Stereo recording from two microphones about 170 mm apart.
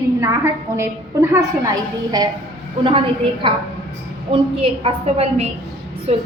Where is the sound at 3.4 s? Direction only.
30° right (ahead or behind).